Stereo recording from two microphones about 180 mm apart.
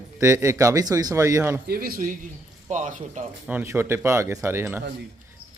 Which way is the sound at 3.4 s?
10° right (ahead or behind).